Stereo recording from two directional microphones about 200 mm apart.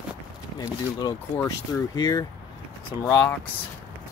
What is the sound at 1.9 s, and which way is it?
Speech, 20° left (ahead or behind).